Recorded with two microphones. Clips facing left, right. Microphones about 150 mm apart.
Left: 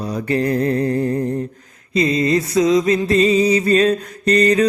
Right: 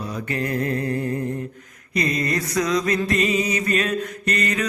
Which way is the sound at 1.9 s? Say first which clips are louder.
Left 7 dB; 25° left (ahead or behind).